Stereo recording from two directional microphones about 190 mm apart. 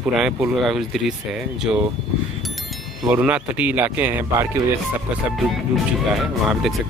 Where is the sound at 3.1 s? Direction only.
5° right (ahead or behind).